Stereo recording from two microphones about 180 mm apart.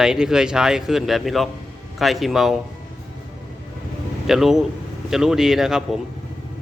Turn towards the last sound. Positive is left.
turn(degrees=0)  # may be behind; listen again after turning